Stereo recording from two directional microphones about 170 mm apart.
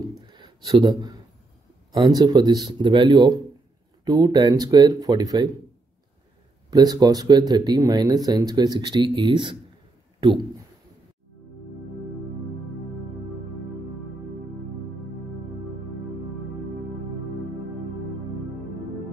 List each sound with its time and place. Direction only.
0.3 s a sound: 25° right (ahead or behind)
1.9 s speech: 25° right (ahead or behind)
6.7 s speech: 25° right (ahead or behind)